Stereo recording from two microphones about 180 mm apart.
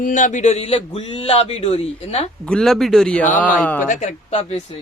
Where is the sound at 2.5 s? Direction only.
5° left (ahead or behind).